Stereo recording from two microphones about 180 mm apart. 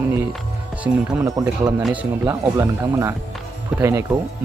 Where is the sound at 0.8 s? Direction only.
15° right (ahead or behind).